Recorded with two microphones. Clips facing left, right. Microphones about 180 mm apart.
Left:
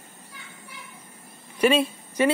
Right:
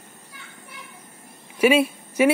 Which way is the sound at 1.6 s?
10° right (ahead or behind).